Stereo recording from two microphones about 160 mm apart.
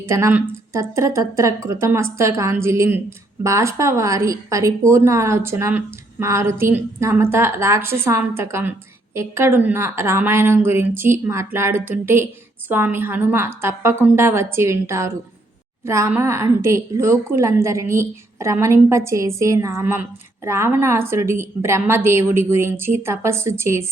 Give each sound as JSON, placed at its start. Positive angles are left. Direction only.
{"t": 0.1, "sound": "a woman's voice", "side_deg": -15}